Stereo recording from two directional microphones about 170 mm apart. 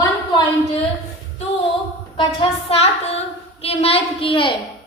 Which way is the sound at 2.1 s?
35° left (ahead or behind).